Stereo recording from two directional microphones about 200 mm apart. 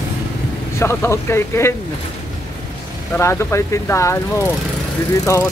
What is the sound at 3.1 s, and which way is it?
Speech, 10° left (ahead or behind).